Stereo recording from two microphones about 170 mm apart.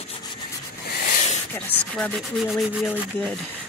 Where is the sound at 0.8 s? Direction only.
60° left (ahead or behind).